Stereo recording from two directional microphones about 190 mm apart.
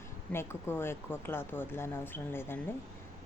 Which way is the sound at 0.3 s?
10° left (ahead or behind).